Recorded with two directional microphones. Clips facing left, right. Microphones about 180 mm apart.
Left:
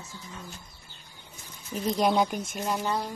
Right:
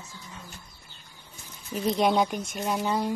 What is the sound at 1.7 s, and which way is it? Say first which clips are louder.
Speech: right 1 dB; centre (ahead or behind).